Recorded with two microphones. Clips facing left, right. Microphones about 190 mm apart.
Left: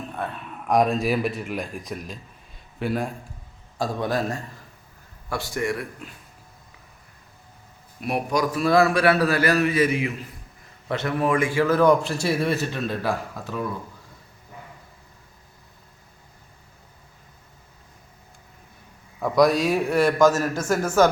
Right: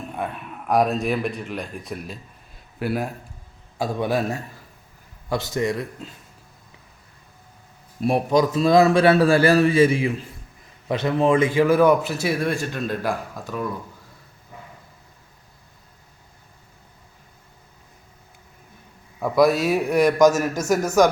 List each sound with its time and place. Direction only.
0.1 s a man's voice: 5° right (ahead or behind)
5.3 s a man's voice: 20° right (ahead or behind)
8.0 s a man's voice: 25° right (ahead or behind); by 13.7 s centre (ahead or behind)
19.2 s a man's voice: 5° right (ahead or behind)